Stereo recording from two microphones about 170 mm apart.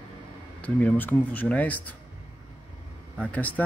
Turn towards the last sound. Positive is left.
turn(degrees=10)  # may be behind; listen again after turning